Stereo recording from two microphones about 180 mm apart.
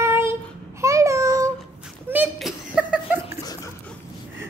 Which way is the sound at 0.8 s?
15° right (ahead or behind).